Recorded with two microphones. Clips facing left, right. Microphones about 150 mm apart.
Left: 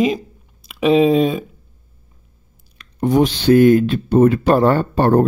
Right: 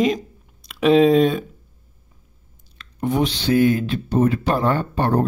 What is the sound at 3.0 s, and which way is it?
Speech, 40° left (ahead or behind).